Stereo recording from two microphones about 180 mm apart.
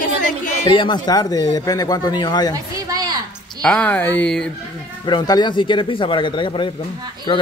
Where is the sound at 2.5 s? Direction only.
20° right (ahead or behind).